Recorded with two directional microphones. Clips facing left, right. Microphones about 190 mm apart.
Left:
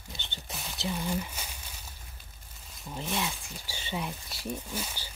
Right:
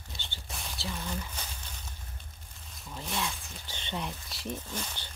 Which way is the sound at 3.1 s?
15° left (ahead or behind).